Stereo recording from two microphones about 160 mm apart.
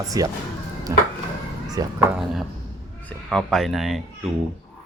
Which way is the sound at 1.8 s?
20° right (ahead or behind).